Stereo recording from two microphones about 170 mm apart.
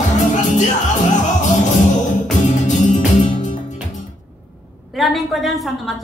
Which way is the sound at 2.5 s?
45° left (ahead or behind).